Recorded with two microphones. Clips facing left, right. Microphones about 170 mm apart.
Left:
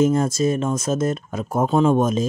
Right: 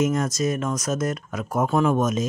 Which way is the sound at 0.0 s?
30° left (ahead or behind).